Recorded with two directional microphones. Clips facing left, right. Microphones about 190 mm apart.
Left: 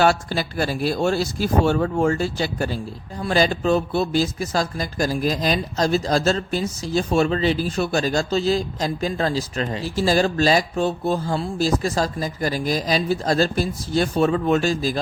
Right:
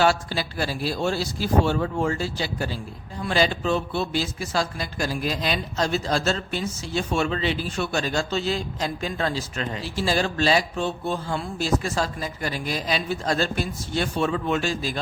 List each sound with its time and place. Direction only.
0.0 s speech: 50° left (ahead or behind)